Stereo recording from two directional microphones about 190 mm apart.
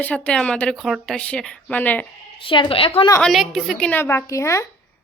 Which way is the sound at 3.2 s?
Centre (ahead or behind).